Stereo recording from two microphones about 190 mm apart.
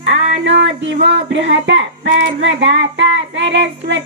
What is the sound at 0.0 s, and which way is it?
Speech, 70° right (ahead or behind).